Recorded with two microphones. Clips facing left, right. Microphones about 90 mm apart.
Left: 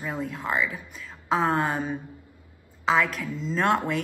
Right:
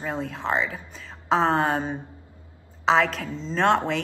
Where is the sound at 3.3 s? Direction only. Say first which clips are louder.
Left 1 dB; 30° right (ahead or behind).